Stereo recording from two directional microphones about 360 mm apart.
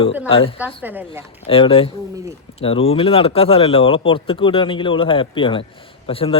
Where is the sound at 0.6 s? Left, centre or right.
Centre.